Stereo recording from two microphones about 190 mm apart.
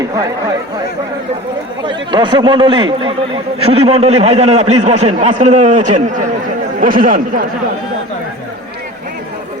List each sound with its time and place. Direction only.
1.8 s a man's voice: 25° right (ahead or behind); by 7.4 s 45° right (ahead or behind)